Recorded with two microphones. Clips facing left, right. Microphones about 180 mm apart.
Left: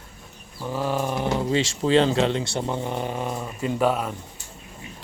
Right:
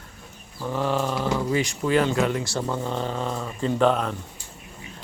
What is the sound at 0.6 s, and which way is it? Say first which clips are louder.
Speech: right 1 dB; 10° left (ahead or behind).